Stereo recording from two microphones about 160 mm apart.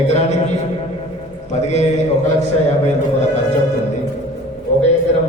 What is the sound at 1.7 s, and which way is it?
Speech, 45° left (ahead or behind).